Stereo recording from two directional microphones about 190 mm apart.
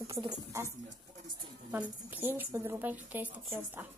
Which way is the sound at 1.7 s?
10° right (ahead or behind).